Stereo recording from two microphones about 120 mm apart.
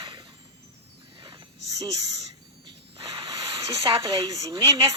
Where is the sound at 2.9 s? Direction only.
45° right (ahead or behind); by 4.7 s 30° right (ahead or behind).